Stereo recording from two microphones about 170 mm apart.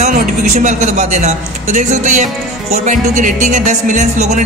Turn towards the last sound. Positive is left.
turn(degrees=-45)  # may be behind; listen again after turning